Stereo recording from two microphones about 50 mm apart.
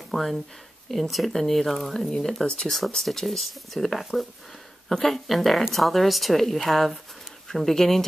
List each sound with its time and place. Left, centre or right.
0.1 s speech: centre
2.0 s speech: centre
3.1 s speech: centre